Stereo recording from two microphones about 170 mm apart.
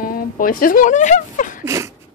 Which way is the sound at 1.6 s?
15° right (ahead or behind).